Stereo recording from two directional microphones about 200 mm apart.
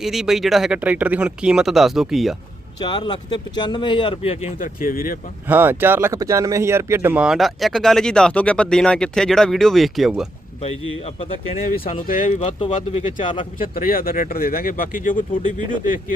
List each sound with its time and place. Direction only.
0.0 s speech: centre (ahead or behind)
2.8 s speech: 20° left (ahead or behind); by 5.2 s 45° left (ahead or behind)
5.5 s speech: 10° right (ahead or behind)
10.6 s speech: 30° left (ahead or behind)
12.0 s speech: 40° left (ahead or behind)
12.5 s speech: 30° left (ahead or behind)
13.6 s speech: 45° left (ahead or behind)